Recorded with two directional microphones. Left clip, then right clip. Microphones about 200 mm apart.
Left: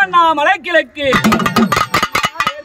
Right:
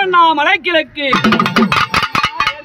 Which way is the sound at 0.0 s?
20° left (ahead or behind).